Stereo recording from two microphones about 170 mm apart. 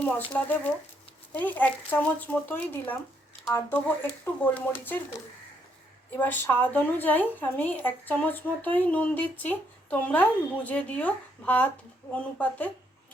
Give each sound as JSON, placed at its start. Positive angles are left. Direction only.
{"t": 0.3, "sound": "a woman's voice", "side_deg": 10}
{"t": 6.1, "sound": "a woman's voice", "side_deg": 10}